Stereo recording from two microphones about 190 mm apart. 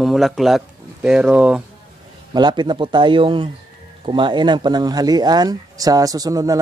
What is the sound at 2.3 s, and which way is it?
Speech, 25° right (ahead or behind).